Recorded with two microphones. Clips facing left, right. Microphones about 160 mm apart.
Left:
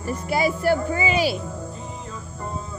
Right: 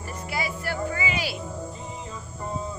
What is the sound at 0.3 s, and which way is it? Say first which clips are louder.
Speech: left 11 dB; 40° left (ahead or behind).